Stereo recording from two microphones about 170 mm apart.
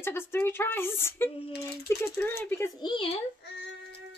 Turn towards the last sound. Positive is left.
turn(degrees=30)  # may be behind; listen again after turning